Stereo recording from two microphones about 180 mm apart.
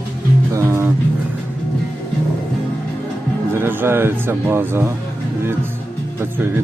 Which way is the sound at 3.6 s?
10° right (ahead or behind).